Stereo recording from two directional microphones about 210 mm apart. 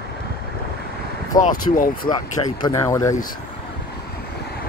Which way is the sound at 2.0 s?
20° left (ahead or behind).